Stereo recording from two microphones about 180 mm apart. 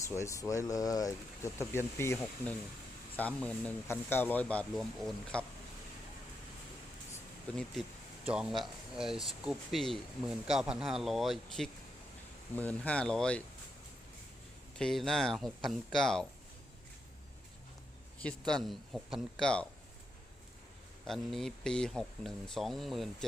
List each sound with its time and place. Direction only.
0.0 s speech: 15° left (ahead or behind)
7.5 s speech: centre (ahead or behind)
14.8 s speech: 5° left (ahead or behind)
18.2 s speech: 5° left (ahead or behind)
21.1 s speech: centre (ahead or behind)